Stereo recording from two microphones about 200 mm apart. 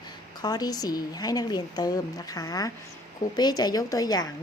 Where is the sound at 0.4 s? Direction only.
20° left (ahead or behind).